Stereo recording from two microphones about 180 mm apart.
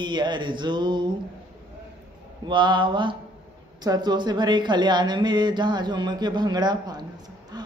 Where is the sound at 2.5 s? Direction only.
25° right (ahead or behind).